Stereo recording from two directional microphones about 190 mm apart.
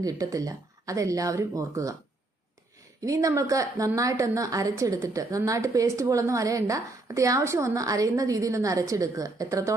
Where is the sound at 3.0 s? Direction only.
15° right (ahead or behind).